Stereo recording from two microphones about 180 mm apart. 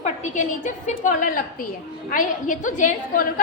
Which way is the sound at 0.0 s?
40° left (ahead or behind).